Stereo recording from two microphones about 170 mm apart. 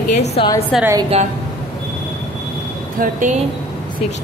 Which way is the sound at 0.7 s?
Centre (ahead or behind).